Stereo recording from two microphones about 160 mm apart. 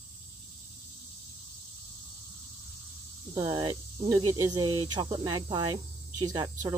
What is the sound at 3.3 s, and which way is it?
Speech, 25° right (ahead or behind).